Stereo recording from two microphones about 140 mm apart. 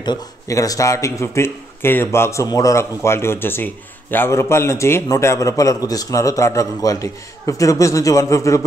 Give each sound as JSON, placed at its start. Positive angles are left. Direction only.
{"t": 0.0, "sound": "a man's voice", "side_deg": 25}